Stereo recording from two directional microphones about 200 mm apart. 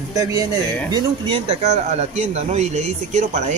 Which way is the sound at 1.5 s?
35° right (ahead or behind).